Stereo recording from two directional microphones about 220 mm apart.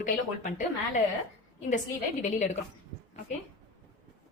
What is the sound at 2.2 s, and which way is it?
Speech, 30° left (ahead or behind).